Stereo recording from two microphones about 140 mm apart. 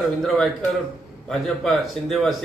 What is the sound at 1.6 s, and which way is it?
Speech, centre (ahead or behind).